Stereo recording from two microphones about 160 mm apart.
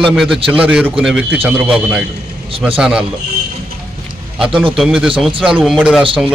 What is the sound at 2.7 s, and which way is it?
Speech, 5° right (ahead or behind).